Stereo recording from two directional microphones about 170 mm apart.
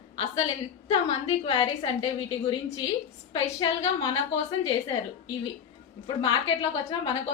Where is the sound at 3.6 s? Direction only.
30° left (ahead or behind).